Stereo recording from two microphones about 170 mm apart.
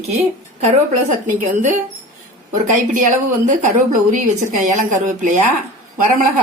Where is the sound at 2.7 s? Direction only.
45° right (ahead or behind).